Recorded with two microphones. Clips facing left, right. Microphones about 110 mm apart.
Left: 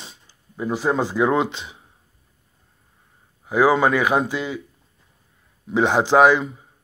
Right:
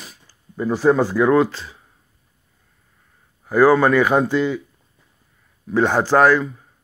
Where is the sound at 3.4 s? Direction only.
15° left (ahead or behind).